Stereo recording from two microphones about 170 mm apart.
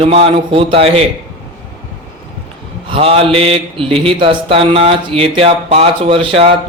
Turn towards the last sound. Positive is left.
turn(degrees=-35)  # may be behind; listen again after turning